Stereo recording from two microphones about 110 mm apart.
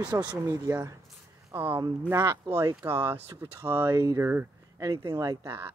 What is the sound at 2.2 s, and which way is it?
Speech, 35° right (ahead or behind).